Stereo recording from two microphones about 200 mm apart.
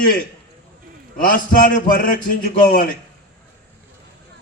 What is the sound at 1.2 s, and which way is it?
Speech, 45° left (ahead or behind).